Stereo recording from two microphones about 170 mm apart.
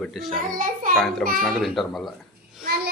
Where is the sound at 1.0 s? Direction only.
Centre (ahead or behind).